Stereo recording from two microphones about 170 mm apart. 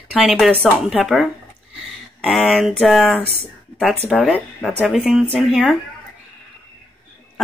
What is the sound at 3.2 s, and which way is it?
Speech, 40° right (ahead or behind).